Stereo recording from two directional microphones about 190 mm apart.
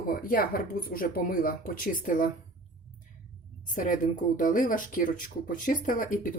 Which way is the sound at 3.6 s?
45° left (ahead or behind).